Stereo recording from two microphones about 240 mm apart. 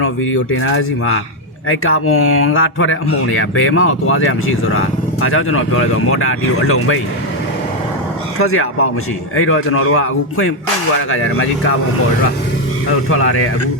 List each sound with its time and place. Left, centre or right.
0.0 s speech: left
8.4 s speech: left
12.9 s speech: left